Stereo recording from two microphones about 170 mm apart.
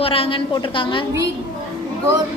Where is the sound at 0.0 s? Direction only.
35° left (ahead or behind).